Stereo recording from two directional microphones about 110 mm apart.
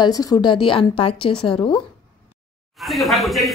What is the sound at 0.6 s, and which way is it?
Speech, 55° left (ahead or behind).